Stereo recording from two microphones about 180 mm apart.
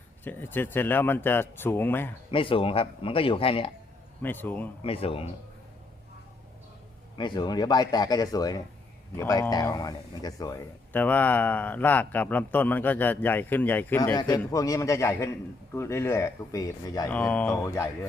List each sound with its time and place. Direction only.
0.3 s speech: 10° left (ahead or behind)
2.3 s a man's voice: 30° left (ahead or behind)
4.2 s speech: 10° left (ahead or behind)
4.8 s a man's voice: 30° left (ahead or behind)
7.2 s a man's voice: 25° left (ahead or behind)
14.2 s speech: 20° left (ahead or behind)
17.1 s speech: 10° left (ahead or behind)